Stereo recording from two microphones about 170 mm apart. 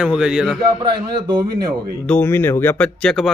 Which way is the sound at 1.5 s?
65° right (ahead or behind).